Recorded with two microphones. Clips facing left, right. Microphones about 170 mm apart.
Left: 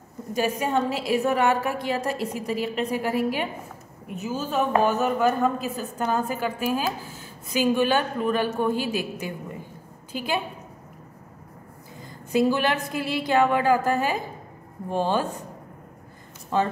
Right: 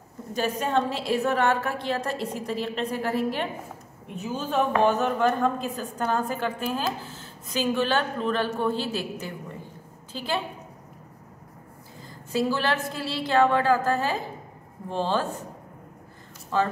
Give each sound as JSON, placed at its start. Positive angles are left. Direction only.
{"t": 0.3, "sound": "a woman's voice", "side_deg": 10}
{"t": 12.3, "sound": "a woman's voice", "side_deg": 15}
{"t": 16.5, "sound": "a woman's voice", "side_deg": 15}